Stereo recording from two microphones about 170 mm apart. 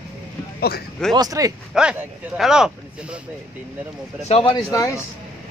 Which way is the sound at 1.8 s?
5° right (ahead or behind).